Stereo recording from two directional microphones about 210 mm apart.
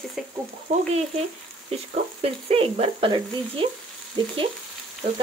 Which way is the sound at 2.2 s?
30° right (ahead or behind).